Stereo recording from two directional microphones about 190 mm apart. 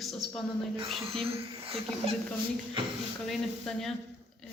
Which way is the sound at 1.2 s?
30° right (ahead or behind).